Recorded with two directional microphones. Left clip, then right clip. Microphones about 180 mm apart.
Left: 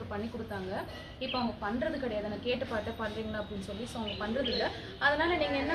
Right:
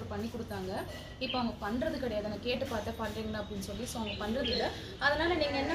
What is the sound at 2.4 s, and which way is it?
Speech, 5° right (ahead or behind).